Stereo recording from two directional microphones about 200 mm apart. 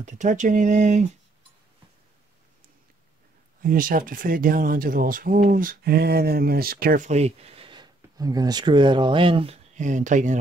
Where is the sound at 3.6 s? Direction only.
45° right (ahead or behind).